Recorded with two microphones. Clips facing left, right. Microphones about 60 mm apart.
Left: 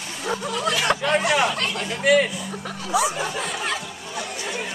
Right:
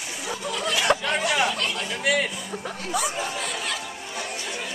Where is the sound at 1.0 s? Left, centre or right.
Left.